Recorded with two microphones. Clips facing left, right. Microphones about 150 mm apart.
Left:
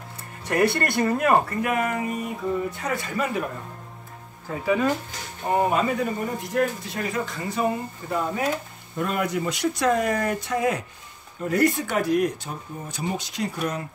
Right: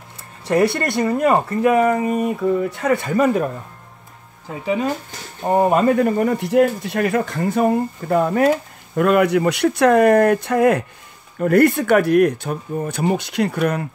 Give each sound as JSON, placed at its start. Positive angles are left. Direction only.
{"t": 0.5, "sound": "speech", "side_deg": -25}
{"t": 1.6, "sound": "speech", "side_deg": -35}
{"t": 2.8, "sound": "speech", "side_deg": -60}
{"t": 4.6, "sound": "speech", "side_deg": -20}
{"t": 5.4, "sound": "speech", "side_deg": -40}